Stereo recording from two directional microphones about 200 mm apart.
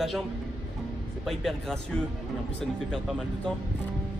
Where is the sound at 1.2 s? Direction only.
Centre (ahead or behind).